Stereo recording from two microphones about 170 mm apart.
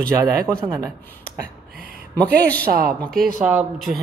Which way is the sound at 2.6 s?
60° right (ahead or behind).